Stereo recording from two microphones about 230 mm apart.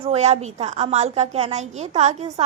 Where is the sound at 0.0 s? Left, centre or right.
Right.